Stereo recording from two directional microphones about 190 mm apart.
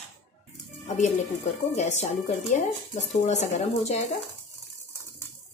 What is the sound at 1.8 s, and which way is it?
Speech, 40° left (ahead or behind).